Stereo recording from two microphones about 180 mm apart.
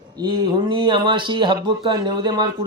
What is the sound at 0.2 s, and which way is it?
A man's voice, 25° right (ahead or behind).